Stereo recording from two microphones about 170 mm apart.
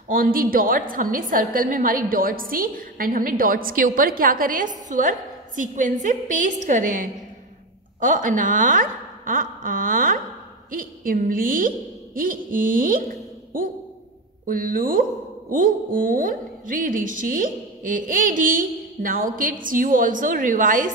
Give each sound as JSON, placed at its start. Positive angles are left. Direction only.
{"t": 0.1, "sound": "a woman's voice", "side_deg": -55}
{"t": 14.4, "sound": "a woman's voice", "side_deg": -55}